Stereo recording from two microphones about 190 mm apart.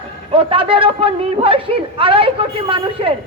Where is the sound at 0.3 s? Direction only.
30° right (ahead or behind).